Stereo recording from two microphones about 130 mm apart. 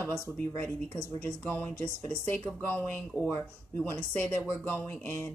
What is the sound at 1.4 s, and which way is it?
Speech, 15° left (ahead or behind).